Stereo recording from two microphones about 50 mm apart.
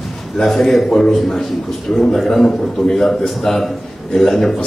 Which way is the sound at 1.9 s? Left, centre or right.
Left.